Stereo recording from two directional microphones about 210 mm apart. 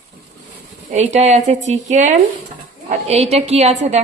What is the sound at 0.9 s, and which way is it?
A woman's voice, 35° right (ahead or behind).